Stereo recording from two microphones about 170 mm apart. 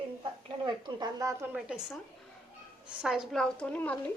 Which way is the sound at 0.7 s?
25° right (ahead or behind).